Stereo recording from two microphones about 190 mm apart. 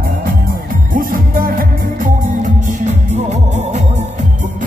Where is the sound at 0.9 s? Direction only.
45° right (ahead or behind).